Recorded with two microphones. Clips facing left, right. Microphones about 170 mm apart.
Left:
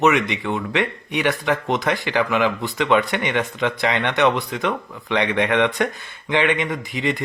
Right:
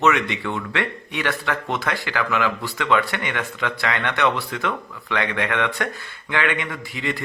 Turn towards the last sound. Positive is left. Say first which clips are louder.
# left 4 dB
turn(degrees=20)  # may be behind; listen again after turning